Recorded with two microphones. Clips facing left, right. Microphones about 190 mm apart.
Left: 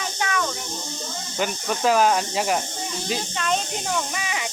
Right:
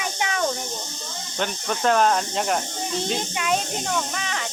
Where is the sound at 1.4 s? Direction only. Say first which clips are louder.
Left 1 dB; 5° left (ahead or behind).